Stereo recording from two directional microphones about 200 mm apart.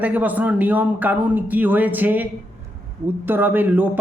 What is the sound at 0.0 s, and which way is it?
Speech, 10° right (ahead or behind).